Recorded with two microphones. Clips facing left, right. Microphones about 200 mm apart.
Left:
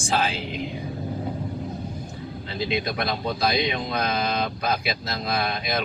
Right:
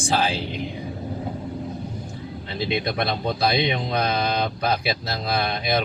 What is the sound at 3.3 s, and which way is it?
Speech, 30° right (ahead or behind).